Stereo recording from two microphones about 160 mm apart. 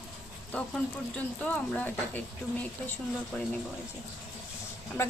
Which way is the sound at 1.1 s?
10° left (ahead or behind).